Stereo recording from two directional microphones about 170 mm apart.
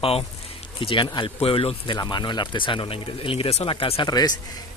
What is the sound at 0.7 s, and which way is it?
Speech, 30° left (ahead or behind).